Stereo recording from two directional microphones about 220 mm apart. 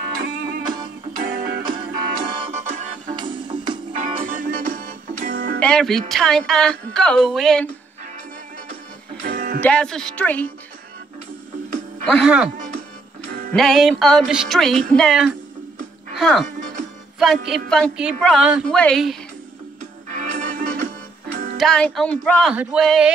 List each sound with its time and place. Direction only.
1.1 s music: 40° right (ahead or behind)
2.1 s music: 25° right (ahead or behind)
3.9 s music: 35° right (ahead or behind)
5.6 s a woman's voice: 5° left (ahead or behind)
9.2 s music: 40° right (ahead or behind)
9.6 s a woman's voice: 5° left (ahead or behind)
12.1 s a woman's voice: centre (ahead or behind)
12.5 s music: 35° right (ahead or behind)
13.5 s a woman's voice: centre (ahead or behind)
16.4 s music: 35° right (ahead or behind)
17.2 s a woman's voice: centre (ahead or behind)
20.1 s music: 35° right (ahead or behind)
21.5 s a woman's voice: 5° left (ahead or behind)